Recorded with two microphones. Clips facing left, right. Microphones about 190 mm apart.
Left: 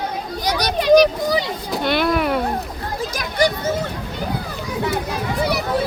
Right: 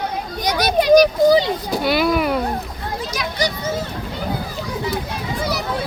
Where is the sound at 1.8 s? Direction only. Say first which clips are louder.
Even; 5° right (ahead or behind).